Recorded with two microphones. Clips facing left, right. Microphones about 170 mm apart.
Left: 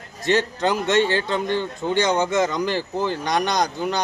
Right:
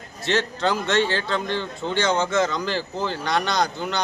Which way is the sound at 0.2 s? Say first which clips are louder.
Left 3 dB; 15° left (ahead or behind).